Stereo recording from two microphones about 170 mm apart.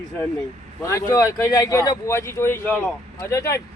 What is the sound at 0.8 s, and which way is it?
Speech, 20° left (ahead or behind).